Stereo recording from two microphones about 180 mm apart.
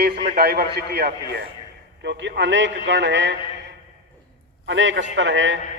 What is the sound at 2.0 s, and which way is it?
A man's voice, 75° right (ahead or behind).